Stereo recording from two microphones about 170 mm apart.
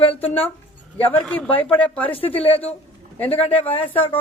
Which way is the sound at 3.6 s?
35° left (ahead or behind).